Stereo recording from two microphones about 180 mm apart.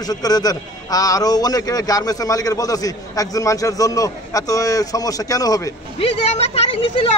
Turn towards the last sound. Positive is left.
turn(degrees=30)  # may be behind; listen again after turning